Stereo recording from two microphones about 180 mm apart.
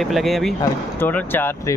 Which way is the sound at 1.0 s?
10° left (ahead or behind).